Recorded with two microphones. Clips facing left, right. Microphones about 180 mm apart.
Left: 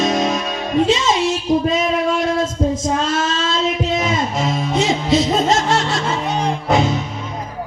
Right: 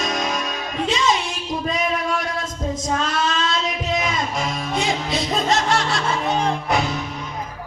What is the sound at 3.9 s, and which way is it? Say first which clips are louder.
Music: left 4 dB; 25° left (ahead or behind).